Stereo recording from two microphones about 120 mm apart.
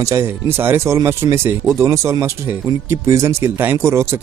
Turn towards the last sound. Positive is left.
turn(degrees=-20)  # may be behind; listen again after turning